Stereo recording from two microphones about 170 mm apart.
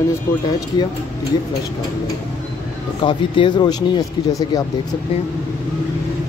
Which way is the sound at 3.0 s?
30° left (ahead or behind).